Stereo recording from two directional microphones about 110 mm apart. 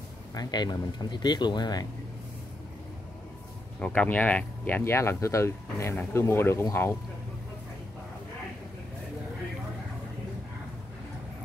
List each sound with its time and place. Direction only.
0.3 s speech: 40° left (ahead or behind)
3.8 s speech: 10° left (ahead or behind)